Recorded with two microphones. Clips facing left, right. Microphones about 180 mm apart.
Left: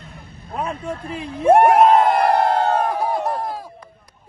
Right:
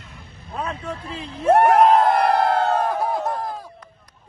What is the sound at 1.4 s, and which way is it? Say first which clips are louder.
Speech: left 2 dB; 15° left (ahead or behind).